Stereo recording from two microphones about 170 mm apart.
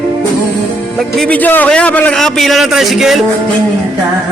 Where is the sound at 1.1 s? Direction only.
5° left (ahead or behind).